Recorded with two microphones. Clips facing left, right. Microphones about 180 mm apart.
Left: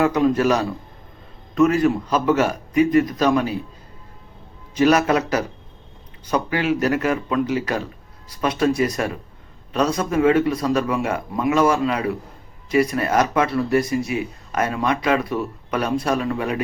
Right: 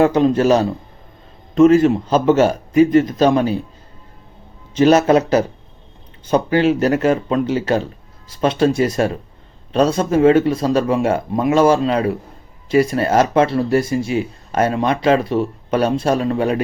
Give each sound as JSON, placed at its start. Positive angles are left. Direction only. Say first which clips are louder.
{"t": 0.0, "sound": "speech", "louder": "right 4 dB", "side_deg": -30}
{"t": 4.7, "sound": "speech", "louder": "right 5 dB", "side_deg": -25}